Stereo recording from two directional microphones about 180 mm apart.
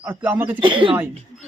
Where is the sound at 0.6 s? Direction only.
30° right (ahead or behind).